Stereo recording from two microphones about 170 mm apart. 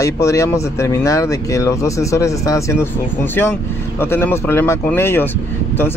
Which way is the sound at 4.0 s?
15° left (ahead or behind).